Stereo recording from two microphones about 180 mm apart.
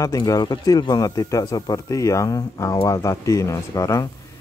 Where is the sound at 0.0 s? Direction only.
20° left (ahead or behind).